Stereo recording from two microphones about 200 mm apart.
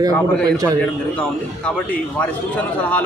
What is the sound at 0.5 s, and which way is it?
Speech, 15° right (ahead or behind).